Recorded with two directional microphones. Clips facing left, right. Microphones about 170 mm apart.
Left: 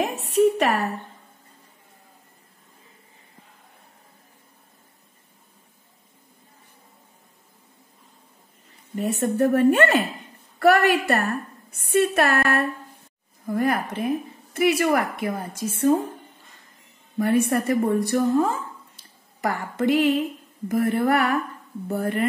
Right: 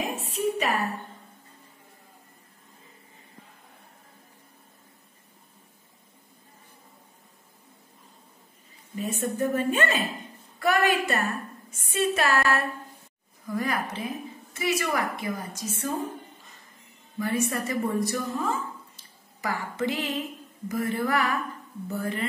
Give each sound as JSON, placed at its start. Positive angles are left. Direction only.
{"t": 0.3, "sound": "a woman's voice", "side_deg": 70}
{"t": 8.9, "sound": "a woman's voice", "side_deg": 65}
{"t": 17.2, "sound": "a woman's voice", "side_deg": 60}